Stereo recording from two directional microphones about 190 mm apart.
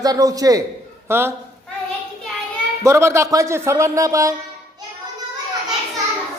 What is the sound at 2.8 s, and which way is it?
Speech, 15° right (ahead or behind).